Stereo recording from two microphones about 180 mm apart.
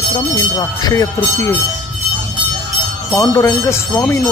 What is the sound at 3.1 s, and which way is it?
Speech, 15° left (ahead or behind).